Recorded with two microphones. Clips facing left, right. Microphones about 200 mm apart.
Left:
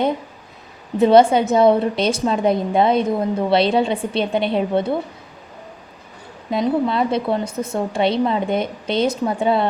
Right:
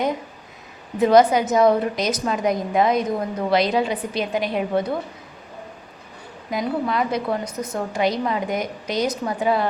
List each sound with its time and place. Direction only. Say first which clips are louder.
0.9 s a woman's voice: left 3 dB; 30° left (ahead or behind)
6.5 s a woman's voice: left 5 dB; 25° left (ahead or behind)